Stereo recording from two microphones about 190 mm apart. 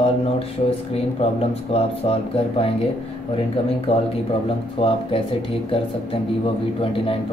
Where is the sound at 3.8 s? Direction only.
30° left (ahead or behind).